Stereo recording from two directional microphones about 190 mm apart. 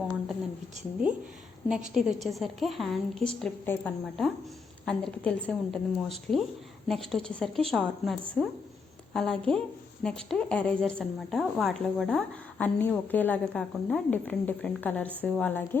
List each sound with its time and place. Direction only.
1.6 s a woman's voice: 5° right (ahead or behind)